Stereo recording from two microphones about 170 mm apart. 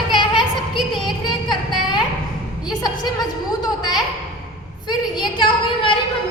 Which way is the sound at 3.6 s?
25° left (ahead or behind).